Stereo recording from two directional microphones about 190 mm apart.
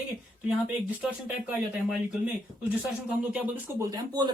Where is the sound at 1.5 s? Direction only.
5° right (ahead or behind).